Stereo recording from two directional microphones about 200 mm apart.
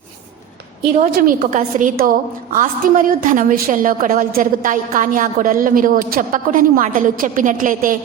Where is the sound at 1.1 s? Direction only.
45° right (ahead or behind).